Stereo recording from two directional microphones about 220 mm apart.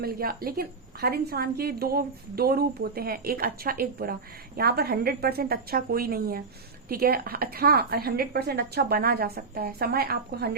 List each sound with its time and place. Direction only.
0.0 s a woman's voice: 45° right (ahead or behind)